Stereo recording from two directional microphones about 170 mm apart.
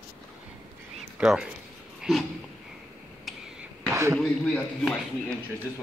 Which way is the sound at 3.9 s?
15° right (ahead or behind).